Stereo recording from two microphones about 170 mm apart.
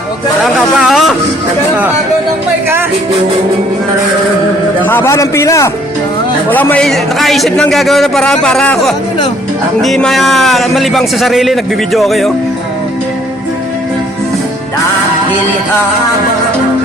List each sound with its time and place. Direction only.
0.8 s music: centre (ahead or behind)
4.9 s a man's voice: 15° left (ahead or behind)